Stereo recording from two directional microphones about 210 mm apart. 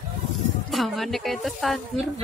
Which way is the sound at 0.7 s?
Centre (ahead or behind).